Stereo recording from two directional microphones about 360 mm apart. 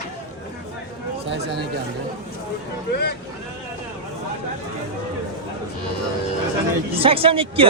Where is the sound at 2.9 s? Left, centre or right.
Left.